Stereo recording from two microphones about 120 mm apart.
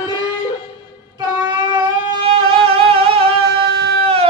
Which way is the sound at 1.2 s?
35° right (ahead or behind).